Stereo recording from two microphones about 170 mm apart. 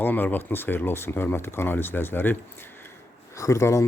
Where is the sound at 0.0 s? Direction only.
10° left (ahead or behind).